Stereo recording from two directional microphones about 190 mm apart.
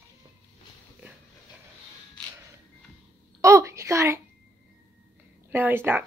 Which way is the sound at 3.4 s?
15° right (ahead or behind).